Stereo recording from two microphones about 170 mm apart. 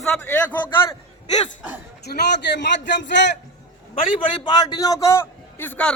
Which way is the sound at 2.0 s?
80° left.